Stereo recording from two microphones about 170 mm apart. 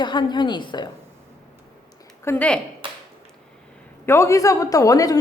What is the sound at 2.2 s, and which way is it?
Speech, 10° left (ahead or behind).